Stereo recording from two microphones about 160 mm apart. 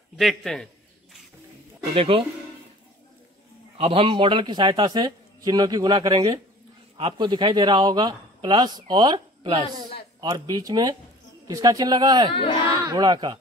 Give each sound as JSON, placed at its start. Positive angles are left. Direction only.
{"t": 0.2, "sound": "a man's voice", "side_deg": 0}
{"t": 2.0, "sound": "speech", "side_deg": -35}
{"t": 3.7, "sound": "speech", "side_deg": -35}
{"t": 12.4, "sound": "speech", "side_deg": 30}
{"t": 12.8, "sound": "speech", "side_deg": -25}